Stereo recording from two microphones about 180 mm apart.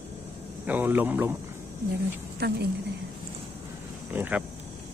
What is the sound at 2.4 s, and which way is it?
Speech, 60° right (ahead or behind).